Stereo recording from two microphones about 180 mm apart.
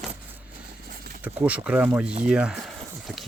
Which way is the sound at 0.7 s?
55° right (ahead or behind).